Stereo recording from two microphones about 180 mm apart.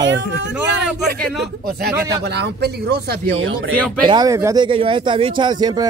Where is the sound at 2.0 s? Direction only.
65° right (ahead or behind).